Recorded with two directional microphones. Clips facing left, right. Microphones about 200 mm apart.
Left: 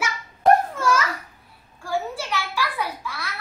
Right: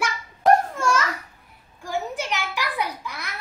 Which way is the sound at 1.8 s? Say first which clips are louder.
Left 1 dB; 20° right (ahead or behind).